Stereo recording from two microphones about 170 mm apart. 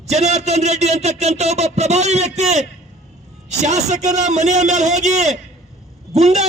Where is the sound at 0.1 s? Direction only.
40° right (ahead or behind).